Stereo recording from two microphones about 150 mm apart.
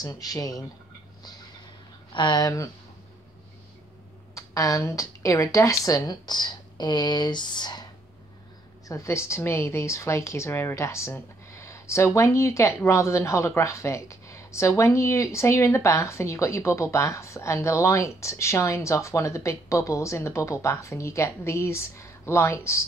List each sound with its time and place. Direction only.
0.0 s speech: 25° left (ahead or behind)
2.1 s speech: 30° left (ahead or behind)
4.4 s speech: 20° left (ahead or behind)
8.8 s speech: 20° left (ahead or behind)